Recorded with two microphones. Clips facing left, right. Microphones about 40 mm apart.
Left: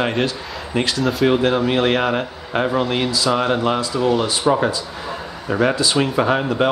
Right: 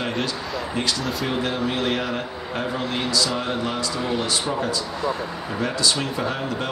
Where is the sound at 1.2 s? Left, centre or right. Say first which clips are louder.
Left 9 dB; left.